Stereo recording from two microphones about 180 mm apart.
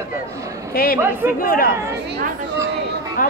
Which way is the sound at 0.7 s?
55° left (ahead or behind).